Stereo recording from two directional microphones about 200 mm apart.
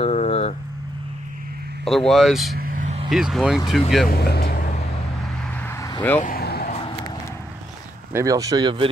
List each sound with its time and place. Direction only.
0.0 s vehicle: 30° left (ahead or behind)
1.9 s speech: centre (ahead or behind)
2.5 s vehicle: 45° right (ahead or behind)
3.1 s speech: centre (ahead or behind)
4.1 s vehicle: 55° left (ahead or behind)
5.8 s vehicle: 20° left (ahead or behind)
6.2 s vehicle: 50° left (ahead or behind)
8.1 s speech: 15° right (ahead or behind)